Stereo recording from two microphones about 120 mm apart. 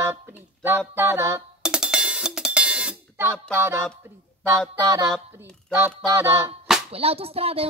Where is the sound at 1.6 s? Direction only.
5° right (ahead or behind).